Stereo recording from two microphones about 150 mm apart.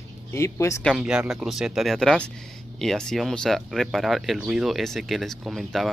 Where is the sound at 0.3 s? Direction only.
20° left (ahead or behind).